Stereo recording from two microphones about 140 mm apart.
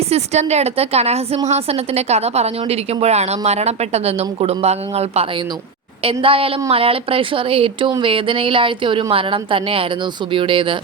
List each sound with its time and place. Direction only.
0.1 s a woman's voice: 50° right (ahead or behind)